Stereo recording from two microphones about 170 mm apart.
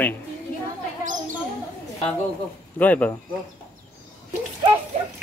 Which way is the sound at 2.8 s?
10° left (ahead or behind).